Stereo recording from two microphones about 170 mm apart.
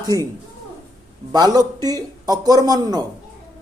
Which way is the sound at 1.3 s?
25° right (ahead or behind).